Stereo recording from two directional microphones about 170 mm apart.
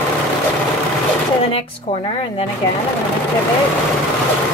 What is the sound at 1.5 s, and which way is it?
Speech, 35° left (ahead or behind).